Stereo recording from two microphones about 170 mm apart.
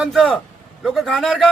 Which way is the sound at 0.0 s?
Centre (ahead or behind).